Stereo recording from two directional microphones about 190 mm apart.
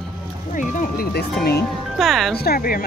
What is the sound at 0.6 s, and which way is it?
Speech, 45° left (ahead or behind).